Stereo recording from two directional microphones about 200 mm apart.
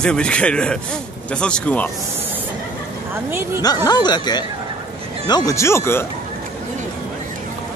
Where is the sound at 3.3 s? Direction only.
10° right (ahead or behind).